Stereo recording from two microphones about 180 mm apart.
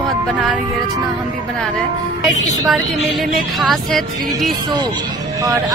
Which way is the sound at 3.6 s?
Centre (ahead or behind).